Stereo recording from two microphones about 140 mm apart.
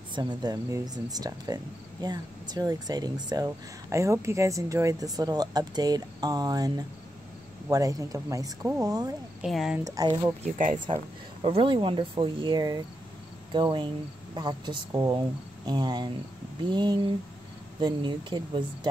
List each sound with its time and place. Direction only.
0.1 s speech: 30° right (ahead or behind)
7.7 s speech: 25° right (ahead or behind)
9.4 s speech: 5° right (ahead or behind)
9.8 s speech: 25° right (ahead or behind)
10.9 s speech: 45° right (ahead or behind)